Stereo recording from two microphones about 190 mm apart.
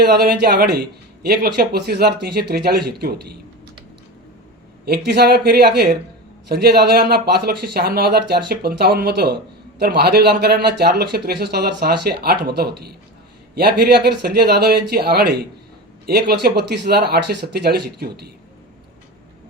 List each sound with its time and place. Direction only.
0.0 s speech: 55° right (ahead or behind)
4.9 s speech: 55° right (ahead or behind)